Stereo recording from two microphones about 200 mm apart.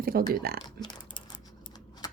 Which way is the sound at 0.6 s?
25° left (ahead or behind).